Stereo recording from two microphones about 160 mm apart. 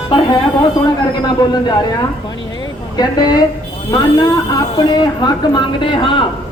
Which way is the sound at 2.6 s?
25° left (ahead or behind).